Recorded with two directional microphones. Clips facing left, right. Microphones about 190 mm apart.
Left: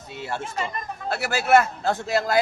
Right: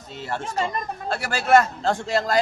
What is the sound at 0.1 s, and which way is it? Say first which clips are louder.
A man's voice: right 2 dB; 10° left (ahead or behind).